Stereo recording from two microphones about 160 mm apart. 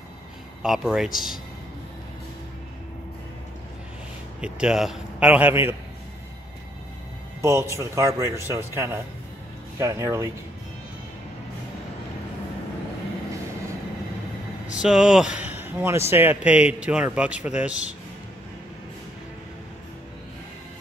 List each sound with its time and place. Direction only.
0.6 s a man's voice: 5° right (ahead or behind)
4.4 s a man's voice: 5° right (ahead or behind)
7.4 s a man's voice: 15° right (ahead or behind)
14.7 s a man's voice: 5° right (ahead or behind)